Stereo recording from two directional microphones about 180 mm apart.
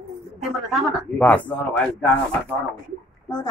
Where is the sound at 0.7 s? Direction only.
10° left (ahead or behind).